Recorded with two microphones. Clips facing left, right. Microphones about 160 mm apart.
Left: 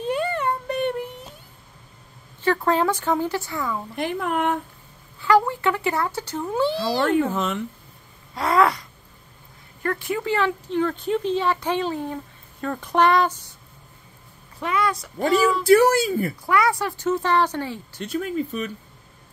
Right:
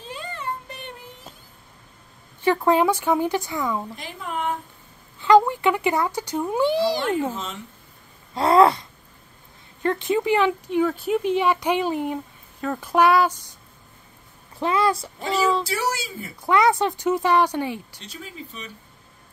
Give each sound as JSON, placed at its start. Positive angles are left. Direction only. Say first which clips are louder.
{"t": 0.0, "sound": "child singing", "louder": "left 10 dB", "side_deg": 60}
{"t": 2.4, "sound": "speech", "louder": "right 2 dB", "side_deg": -15}
{"t": 3.9, "sound": "speech", "louder": "left 7 dB", "side_deg": 60}
{"t": 5.2, "sound": "speech", "louder": "right 3 dB", "side_deg": -20}
{"t": 7.2, "sound": "speech", "louder": "left 5 dB", "side_deg": 65}
{"t": 8.4, "sound": "a woman's voice", "louder": "right 4 dB", "side_deg": -30}
{"t": 9.8, "sound": "speech", "louder": "right 4 dB", "side_deg": -20}
{"t": 12.5, "sound": "speech", "louder": "right 1 dB", "side_deg": -5}
{"t": 14.6, "sound": "a woman's voice", "louder": "right 3 dB", "side_deg": -30}
{"t": 15.1, "sound": "speech", "louder": "left 3 dB", "side_deg": 50}
{"t": 16.4, "sound": "speech", "louder": "right 5 dB", "side_deg": -20}
{"t": 18.0, "sound": "speech", "louder": "left 13 dB", "side_deg": 55}